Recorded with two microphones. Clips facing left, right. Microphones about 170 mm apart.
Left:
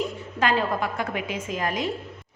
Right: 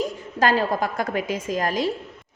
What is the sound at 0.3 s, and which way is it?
A woman's voice, 40° right (ahead or behind).